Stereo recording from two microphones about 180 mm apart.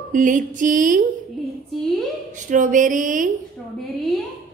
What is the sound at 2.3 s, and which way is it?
Speech, 45° right (ahead or behind).